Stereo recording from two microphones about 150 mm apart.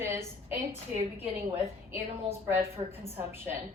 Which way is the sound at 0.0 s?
15° right (ahead or behind).